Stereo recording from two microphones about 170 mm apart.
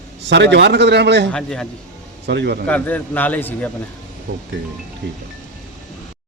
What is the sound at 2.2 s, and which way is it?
Speech, 85° right.